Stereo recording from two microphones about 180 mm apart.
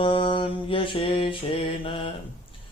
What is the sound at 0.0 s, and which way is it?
Mantra, 30° left (ahead or behind).